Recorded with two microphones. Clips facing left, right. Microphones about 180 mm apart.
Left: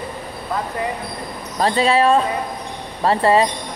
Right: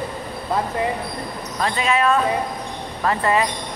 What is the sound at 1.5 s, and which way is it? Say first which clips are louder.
Speech: left 5 dB; 35° left (ahead or behind).